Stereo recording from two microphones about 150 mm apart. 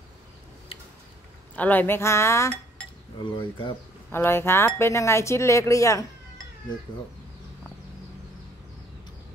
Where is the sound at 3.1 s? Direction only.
30° left (ahead or behind).